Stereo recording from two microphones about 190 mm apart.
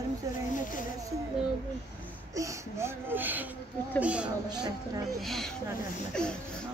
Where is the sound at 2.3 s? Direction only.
15° right (ahead or behind).